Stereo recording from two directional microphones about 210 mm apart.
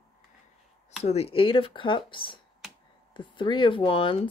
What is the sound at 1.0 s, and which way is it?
Speech, 30° left (ahead or behind).